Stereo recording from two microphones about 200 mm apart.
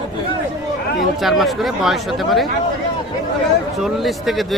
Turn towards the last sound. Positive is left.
turn(degrees=0)  # may be behind; listen again after turning